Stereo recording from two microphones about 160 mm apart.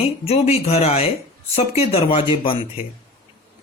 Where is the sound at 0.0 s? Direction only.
40° left (ahead or behind).